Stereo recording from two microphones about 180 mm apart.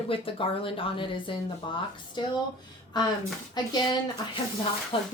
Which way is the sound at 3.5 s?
25° left (ahead or behind).